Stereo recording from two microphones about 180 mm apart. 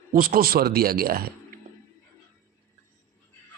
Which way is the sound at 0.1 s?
50° right (ahead or behind).